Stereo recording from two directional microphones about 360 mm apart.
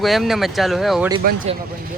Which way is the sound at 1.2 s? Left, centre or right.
Right.